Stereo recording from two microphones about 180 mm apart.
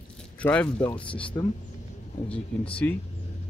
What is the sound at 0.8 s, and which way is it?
Speech, 25° left (ahead or behind).